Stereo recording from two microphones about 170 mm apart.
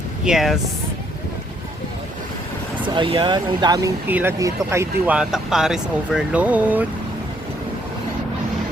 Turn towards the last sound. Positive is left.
turn(degrees=-10)  # may be behind; listen again after turning